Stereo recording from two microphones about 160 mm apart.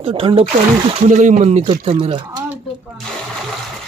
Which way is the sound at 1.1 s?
50° right (ahead or behind).